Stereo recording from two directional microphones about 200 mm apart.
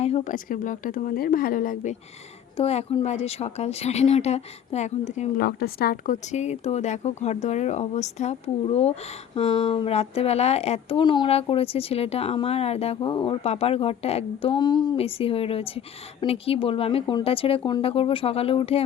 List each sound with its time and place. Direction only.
0.0 s a woman's voice: 35° left (ahead or behind)
5.4 s speech: 50° left (ahead or behind); by 18.9 s 30° left (ahead or behind)